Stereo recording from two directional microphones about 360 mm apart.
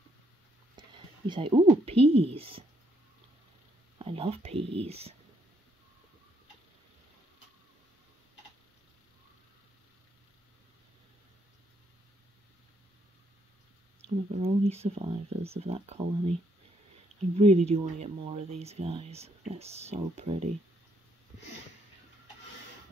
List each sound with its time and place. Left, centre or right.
0.7 s speech: centre
4.0 s speech: centre
14.0 s speech: centre
17.4 s speech: centre